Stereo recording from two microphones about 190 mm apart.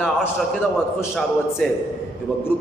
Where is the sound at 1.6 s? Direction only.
5° left (ahead or behind).